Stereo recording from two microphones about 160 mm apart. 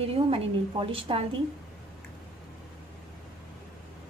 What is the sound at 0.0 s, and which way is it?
A woman's voice, 35° right (ahead or behind).